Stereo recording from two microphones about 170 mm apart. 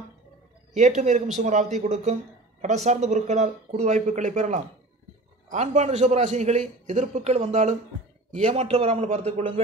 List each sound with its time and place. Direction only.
0.7 s a man's voice: 45° right (ahead or behind)